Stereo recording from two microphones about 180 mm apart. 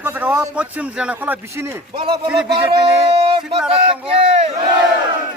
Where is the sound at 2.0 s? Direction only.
30° right (ahead or behind).